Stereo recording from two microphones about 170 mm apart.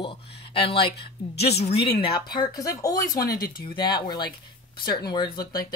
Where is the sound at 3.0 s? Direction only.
60° left (ahead or behind).